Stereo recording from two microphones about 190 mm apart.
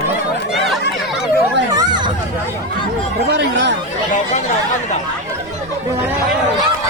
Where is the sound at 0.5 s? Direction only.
Centre (ahead or behind).